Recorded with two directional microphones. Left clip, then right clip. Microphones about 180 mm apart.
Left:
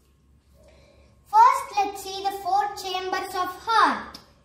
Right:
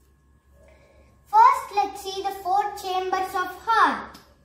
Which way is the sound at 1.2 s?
10° right (ahead or behind).